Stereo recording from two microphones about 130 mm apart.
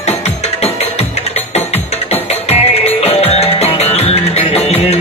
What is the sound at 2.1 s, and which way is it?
Music, 55° left (ahead or behind).